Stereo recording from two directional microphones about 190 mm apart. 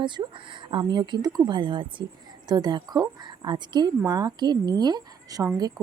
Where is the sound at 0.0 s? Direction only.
25° right (ahead or behind).